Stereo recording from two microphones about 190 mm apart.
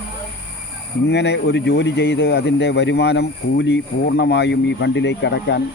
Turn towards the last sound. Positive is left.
turn(degrees=65)  # may be behind; listen again after turning